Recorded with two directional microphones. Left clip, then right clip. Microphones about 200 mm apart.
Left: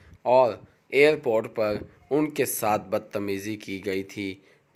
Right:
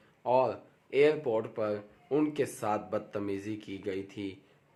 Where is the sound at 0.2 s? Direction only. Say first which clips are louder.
Left 8 dB; 25° left (ahead or behind).